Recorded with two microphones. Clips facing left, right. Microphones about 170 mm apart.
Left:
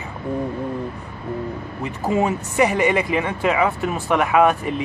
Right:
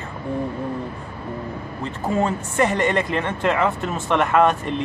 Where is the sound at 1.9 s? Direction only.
15° left (ahead or behind).